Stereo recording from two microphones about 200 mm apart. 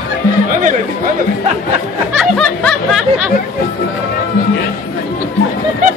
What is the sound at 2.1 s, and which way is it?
Music, 5° left (ahead or behind).